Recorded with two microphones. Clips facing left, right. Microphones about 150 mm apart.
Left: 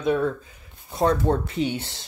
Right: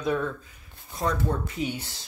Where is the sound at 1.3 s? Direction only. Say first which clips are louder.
Left 7 dB; 75° left (ahead or behind).